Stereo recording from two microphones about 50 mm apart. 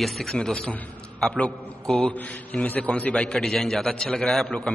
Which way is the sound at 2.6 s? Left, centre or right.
Left.